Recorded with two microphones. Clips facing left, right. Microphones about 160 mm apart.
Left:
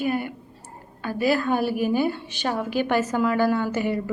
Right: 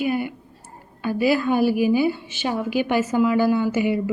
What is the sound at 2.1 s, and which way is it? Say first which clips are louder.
Speech: left 2 dB; 60° left (ahead or behind).